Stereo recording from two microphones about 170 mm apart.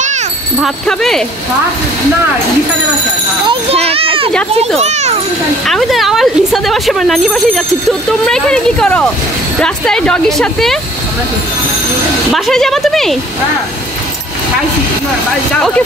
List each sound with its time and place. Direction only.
0.6 s speech: centre (ahead or behind)
3.4 s a child's voice: 35° right (ahead or behind)
5.7 s speech: centre (ahead or behind)
12.3 s speech: centre (ahead or behind)